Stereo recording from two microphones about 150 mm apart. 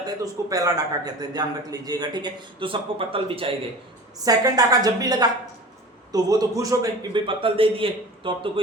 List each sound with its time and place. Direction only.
0.2 s a man's voice: 25° right (ahead or behind)
4.2 s a man's voice: 25° right (ahead or behind)